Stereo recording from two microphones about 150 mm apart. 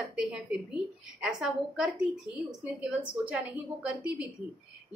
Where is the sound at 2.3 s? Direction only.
30° left (ahead or behind).